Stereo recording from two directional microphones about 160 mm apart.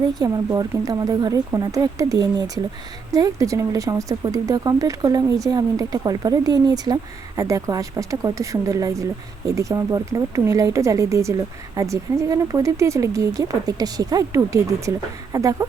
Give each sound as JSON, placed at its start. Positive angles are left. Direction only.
{"t": 0.1, "sound": "speech", "side_deg": -25}